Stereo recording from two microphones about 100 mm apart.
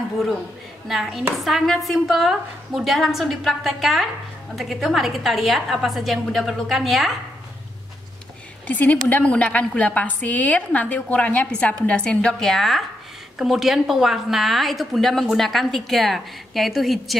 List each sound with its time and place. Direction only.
0.8 s a woman's voice: centre (ahead or behind)
8.6 s a woman's voice: 15° left (ahead or behind); by 17.2 s centre (ahead or behind)